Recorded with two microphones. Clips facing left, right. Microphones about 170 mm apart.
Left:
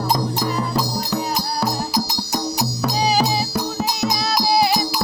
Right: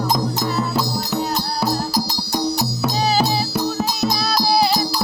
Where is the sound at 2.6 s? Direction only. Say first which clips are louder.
Even; 15° left (ahead or behind).